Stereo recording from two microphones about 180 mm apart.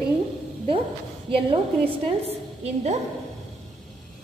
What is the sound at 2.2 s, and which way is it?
Speech, 35° right (ahead or behind).